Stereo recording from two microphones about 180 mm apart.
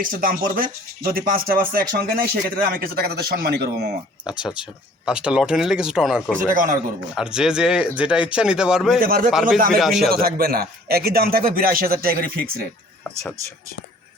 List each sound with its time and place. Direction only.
0.0 s speech: 50° right (ahead or behind)
4.3 s speech: 5° right (ahead or behind)
6.5 s speech: 50° right (ahead or behind)
7.2 s speech: 5° right (ahead or behind)
9.0 s speech: 55° right (ahead or behind)
9.3 s speech: centre (ahead or behind)
10.1 s speech: 55° right (ahead or behind)